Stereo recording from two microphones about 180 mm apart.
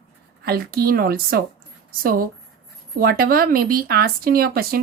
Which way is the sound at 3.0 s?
55° right (ahead or behind).